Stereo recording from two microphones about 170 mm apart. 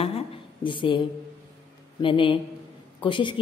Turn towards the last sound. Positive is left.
turn(degrees=30)  # may be behind; listen again after turning